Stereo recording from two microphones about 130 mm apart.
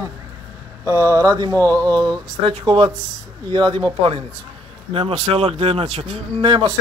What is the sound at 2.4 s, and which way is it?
A man's voice, 45° right (ahead or behind).